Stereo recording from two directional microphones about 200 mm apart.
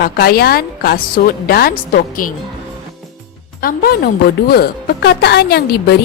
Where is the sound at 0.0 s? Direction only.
50° left (ahead or behind).